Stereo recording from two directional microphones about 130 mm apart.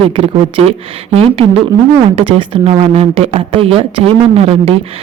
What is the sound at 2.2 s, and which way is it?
Speech, 45° right (ahead or behind).